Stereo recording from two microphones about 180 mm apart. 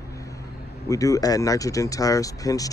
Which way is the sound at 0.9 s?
20° left (ahead or behind).